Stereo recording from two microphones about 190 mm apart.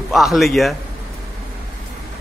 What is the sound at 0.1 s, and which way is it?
Speech, centre (ahead or behind).